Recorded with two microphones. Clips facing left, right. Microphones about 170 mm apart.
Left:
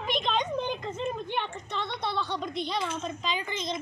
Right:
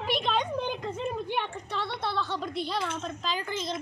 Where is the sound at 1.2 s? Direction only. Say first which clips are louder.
Right 1 dB; 10° right (ahead or behind).